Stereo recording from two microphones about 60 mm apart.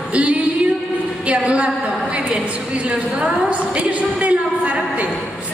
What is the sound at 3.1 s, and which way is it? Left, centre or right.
Speech, centre.